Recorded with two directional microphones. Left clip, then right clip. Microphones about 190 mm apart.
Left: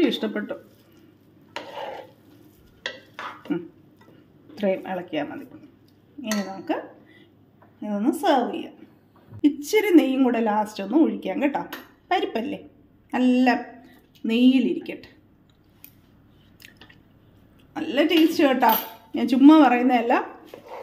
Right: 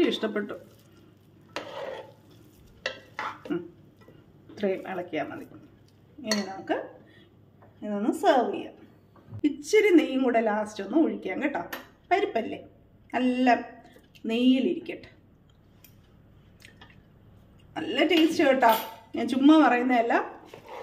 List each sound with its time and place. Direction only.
0.0 s speech: 25° left (ahead or behind)
3.5 s speech: 20° left (ahead or behind)
7.8 s a woman's voice: 35° left (ahead or behind)
17.7 s a woman's voice: 35° left (ahead or behind)